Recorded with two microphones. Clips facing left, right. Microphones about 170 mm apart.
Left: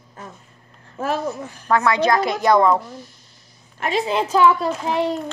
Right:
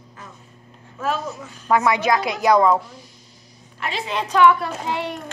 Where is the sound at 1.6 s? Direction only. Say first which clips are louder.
Left 1 dB; 10° right (ahead or behind).